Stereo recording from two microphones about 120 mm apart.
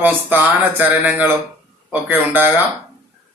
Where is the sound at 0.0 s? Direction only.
15° right (ahead or behind).